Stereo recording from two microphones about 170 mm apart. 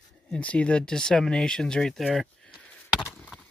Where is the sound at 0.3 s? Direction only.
5° left (ahead or behind).